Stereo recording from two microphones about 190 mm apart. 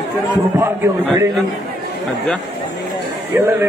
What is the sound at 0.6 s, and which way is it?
Speech, 15° right (ahead or behind).